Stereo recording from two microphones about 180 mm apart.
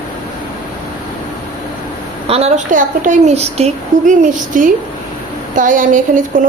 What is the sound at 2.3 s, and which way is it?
A woman's voice, 35° right (ahead or behind).